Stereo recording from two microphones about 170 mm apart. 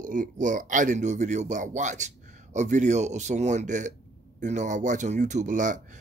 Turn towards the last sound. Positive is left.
turn(degrees=-45)  # may be behind; listen again after turning